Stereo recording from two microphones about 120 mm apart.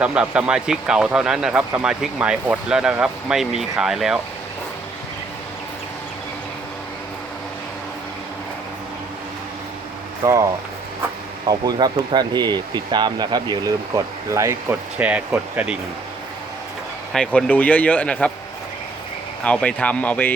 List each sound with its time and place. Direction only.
0.0 s speech: 10° right (ahead or behind)
10.2 s speech: 25° right (ahead or behind)
11.4 s speech: 35° right (ahead or behind)
14.9 s speech: 10° right (ahead or behind)
17.1 s speech: 5° left (ahead or behind)
19.5 s speech: 10° left (ahead or behind)